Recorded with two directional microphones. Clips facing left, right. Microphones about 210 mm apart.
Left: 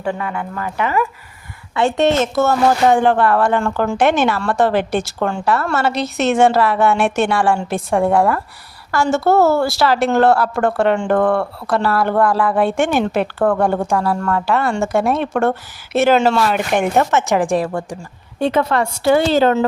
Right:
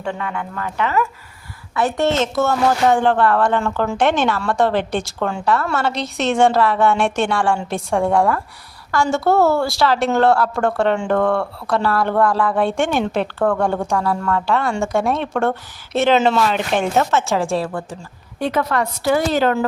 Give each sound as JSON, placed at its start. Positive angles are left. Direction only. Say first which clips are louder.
{"t": 0.0, "sound": "a woman's voice", "louder": "left 3 dB", "side_deg": 5}
{"t": 1.7, "sound": "a woman's voice", "louder": "left 3 dB", "side_deg": 25}
{"t": 2.1, "sound": "a woman's voice", "louder": "left 2 dB", "side_deg": 5}
{"t": 3.6, "sound": "speech", "louder": "left 2 dB", "side_deg": -5}
{"t": 3.9, "sound": "a woman's voice", "louder": "left 2 dB", "side_deg": 5}
{"t": 16.4, "sound": "a woman's voice", "louder": "left 2 dB", "side_deg": 10}